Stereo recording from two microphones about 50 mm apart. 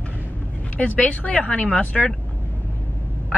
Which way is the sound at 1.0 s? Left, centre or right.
Left.